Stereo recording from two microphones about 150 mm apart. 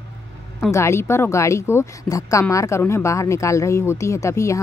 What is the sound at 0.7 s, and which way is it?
Speech, 20° left (ahead or behind).